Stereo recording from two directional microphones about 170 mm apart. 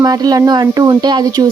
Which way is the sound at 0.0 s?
25° right (ahead or behind).